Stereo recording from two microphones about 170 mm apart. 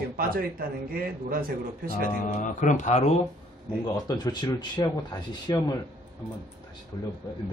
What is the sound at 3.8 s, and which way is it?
Speech, 20° left (ahead or behind).